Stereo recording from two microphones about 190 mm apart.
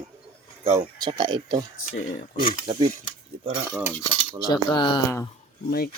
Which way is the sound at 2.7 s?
30° right (ahead or behind).